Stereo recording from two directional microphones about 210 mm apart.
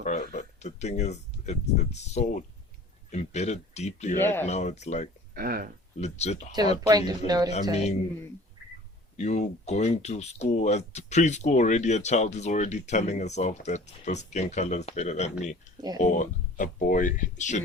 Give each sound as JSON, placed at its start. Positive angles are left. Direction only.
{"t": 0.0, "sound": "speech", "side_deg": 35}
{"t": 4.2, "sound": "speech", "side_deg": 10}
{"t": 4.4, "sound": "speech", "side_deg": 30}
{"t": 5.3, "sound": "speech", "side_deg": -45}
{"t": 6.0, "sound": "speech", "side_deg": 30}
{"t": 6.8, "sound": "speech", "side_deg": -20}
{"t": 7.7, "sound": "speech", "side_deg": 30}
{"t": 9.1, "sound": "speech", "side_deg": 35}